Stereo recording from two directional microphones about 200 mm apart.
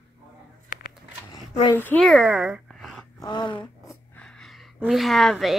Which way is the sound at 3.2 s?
20° left (ahead or behind).